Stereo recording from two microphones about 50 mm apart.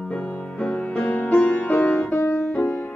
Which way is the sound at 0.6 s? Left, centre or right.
Left.